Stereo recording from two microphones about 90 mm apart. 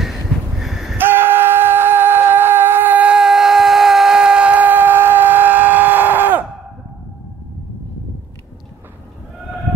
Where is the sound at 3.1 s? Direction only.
5° right (ahead or behind); by 6.4 s 20° right (ahead or behind).